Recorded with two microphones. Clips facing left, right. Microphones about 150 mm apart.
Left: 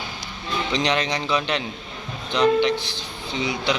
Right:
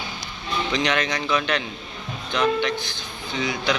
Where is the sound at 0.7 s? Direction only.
30° left (ahead or behind).